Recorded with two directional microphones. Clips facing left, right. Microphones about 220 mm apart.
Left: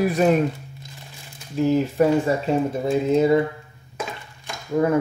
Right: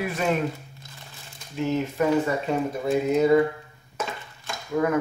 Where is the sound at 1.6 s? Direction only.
35° left (ahead or behind).